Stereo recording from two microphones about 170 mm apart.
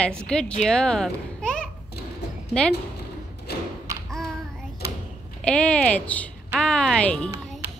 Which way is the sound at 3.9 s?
20° right (ahead or behind).